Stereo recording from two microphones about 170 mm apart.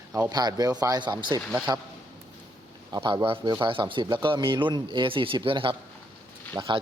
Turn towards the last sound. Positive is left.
turn(degrees=-30)  # may be behind; listen again after turning